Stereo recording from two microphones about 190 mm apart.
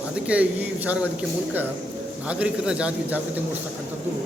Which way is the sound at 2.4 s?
5° right (ahead or behind).